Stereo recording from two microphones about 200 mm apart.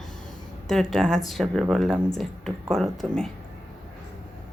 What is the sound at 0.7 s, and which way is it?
Speech, centre (ahead or behind).